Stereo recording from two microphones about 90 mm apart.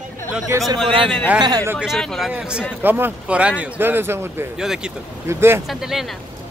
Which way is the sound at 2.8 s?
20° right (ahead or behind).